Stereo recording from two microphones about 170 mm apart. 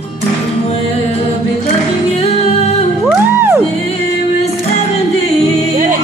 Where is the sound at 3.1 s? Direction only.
15° right (ahead or behind).